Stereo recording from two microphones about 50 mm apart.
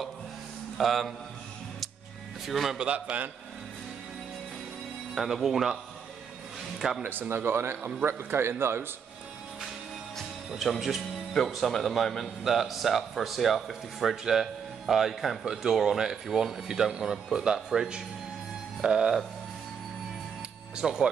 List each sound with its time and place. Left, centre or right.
0.7 s speech: centre
2.4 s speech: centre
2.8 s a man's voice: centre
5.1 s speech: centre
7.0 s speech: right
10.5 s speech: centre
15.4 s speech: centre
20.7 s speech: centre